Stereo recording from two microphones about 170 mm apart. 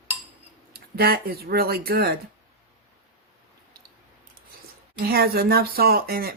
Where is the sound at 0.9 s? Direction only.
65° right (ahead or behind).